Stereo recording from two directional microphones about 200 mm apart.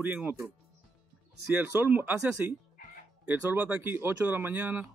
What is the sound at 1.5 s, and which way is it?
Speech, 10° right (ahead or behind).